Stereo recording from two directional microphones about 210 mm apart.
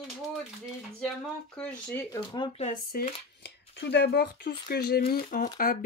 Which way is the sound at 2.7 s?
50° left (ahead or behind).